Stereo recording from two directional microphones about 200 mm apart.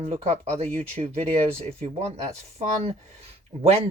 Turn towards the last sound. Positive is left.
turn(degrees=-30)  # may be behind; listen again after turning